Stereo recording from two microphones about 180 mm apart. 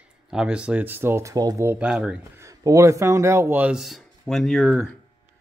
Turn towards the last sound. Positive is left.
turn(degrees=0)  # may be behind; listen again after turning